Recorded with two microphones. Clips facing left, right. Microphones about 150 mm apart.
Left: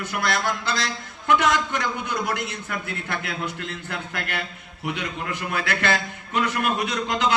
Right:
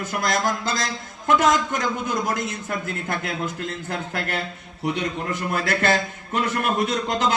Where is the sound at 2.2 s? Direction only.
40° right (ahead or behind).